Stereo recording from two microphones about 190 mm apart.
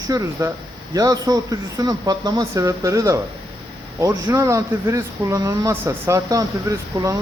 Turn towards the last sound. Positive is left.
turn(degrees=-15)  # may be behind; listen again after turning